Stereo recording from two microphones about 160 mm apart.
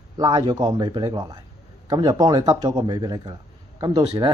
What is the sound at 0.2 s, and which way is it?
Speech, 25° right (ahead or behind).